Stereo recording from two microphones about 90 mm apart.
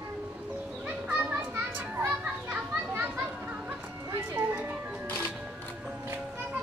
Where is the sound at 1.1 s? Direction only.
10° right (ahead or behind).